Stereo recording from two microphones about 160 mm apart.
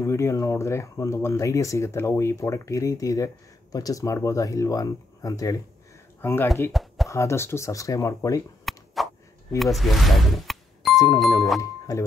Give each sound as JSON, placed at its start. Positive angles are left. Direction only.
{"t": 0.0, "sound": "speech", "side_deg": 20}
{"t": 6.7, "sound": "a sound", "side_deg": 0}
{"t": 7.1, "sound": "speech", "side_deg": 20}
{"t": 8.6, "sound": "a sound", "side_deg": 0}
{"t": 9.6, "sound": "speech", "side_deg": 0}
{"t": 11.9, "sound": "speech", "side_deg": 20}